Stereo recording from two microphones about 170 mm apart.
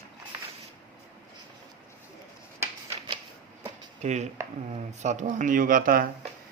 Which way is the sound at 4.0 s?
45° right (ahead or behind).